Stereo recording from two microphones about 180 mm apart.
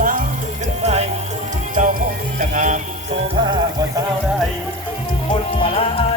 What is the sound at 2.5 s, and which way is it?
Music, 45° right (ahead or behind).